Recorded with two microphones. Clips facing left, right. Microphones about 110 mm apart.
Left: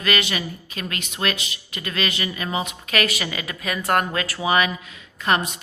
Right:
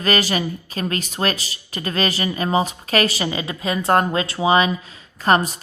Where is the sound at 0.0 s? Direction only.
35° right (ahead or behind).